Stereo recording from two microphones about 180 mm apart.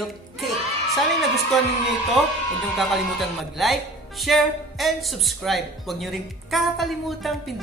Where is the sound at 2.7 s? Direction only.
Centre (ahead or behind).